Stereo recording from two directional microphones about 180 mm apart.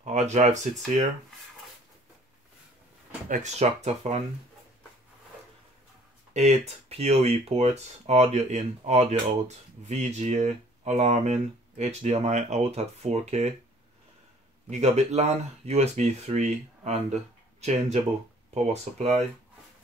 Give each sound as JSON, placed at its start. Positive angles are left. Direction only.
{"t": 0.0, "sound": "speech", "side_deg": -40}
{"t": 3.3, "sound": "speech", "side_deg": -40}
{"t": 6.3, "sound": "speech", "side_deg": -35}
{"t": 14.7, "sound": "speech", "side_deg": -35}